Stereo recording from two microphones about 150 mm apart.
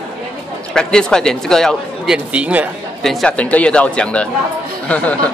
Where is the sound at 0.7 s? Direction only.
5° left (ahead or behind).